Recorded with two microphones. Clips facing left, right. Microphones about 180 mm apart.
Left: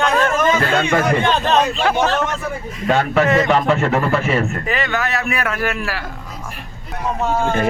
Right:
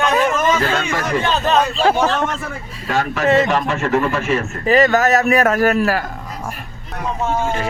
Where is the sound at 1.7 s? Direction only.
30° right (ahead or behind).